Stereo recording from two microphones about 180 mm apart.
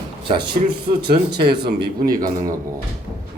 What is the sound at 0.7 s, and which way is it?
Speech, 60° right (ahead or behind).